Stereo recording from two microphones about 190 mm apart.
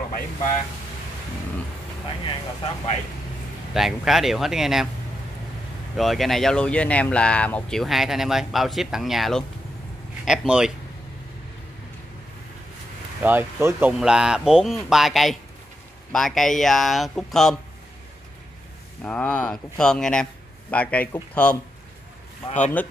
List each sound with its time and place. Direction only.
2.2 s speech: 30° left (ahead or behind)
3.7 s speech: centre (ahead or behind)
5.9 s speech: centre (ahead or behind)
13.2 s speech: 10° right (ahead or behind)
19.0 s speech: 5° left (ahead or behind)